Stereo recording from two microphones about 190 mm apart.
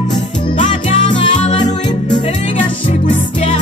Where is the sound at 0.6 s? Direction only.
40° left (ahead or behind).